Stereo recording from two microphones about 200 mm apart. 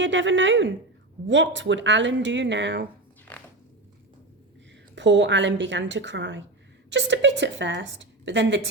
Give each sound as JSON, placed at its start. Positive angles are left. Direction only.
{"t": 0.0, "sound": "a woman's voice", "side_deg": -65}
{"t": 4.9, "sound": "a woman's voice", "side_deg": -65}